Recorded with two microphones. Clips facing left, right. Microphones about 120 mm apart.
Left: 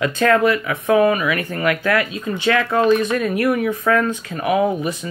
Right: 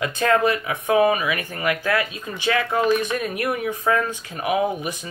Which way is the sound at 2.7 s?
45° left (ahead or behind).